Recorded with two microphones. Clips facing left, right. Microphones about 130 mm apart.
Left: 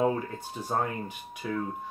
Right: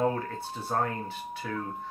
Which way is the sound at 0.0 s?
15° left (ahead or behind).